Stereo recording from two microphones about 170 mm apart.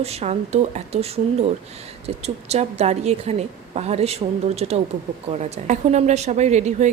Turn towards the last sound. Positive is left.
turn(degrees=-40)  # may be behind; listen again after turning